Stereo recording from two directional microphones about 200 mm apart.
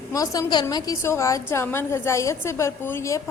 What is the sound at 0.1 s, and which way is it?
A woman's voice, 15° left (ahead or behind).